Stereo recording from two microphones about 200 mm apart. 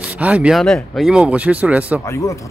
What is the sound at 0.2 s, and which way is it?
A man's voice, 5° right (ahead or behind).